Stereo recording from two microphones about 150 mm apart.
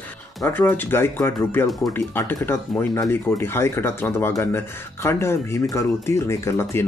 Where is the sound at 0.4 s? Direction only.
15° left (ahead or behind).